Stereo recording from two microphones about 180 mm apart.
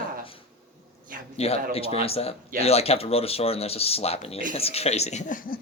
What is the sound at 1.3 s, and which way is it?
Speech, 35° left (ahead or behind).